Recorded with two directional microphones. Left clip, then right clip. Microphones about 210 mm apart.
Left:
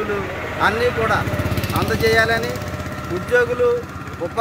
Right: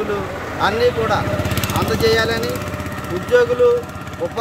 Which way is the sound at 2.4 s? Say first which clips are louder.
Right 2 dB; 50° right (ahead or behind).